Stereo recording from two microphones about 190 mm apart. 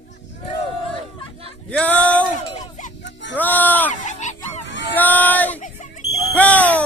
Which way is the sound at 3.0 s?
70° left (ahead or behind).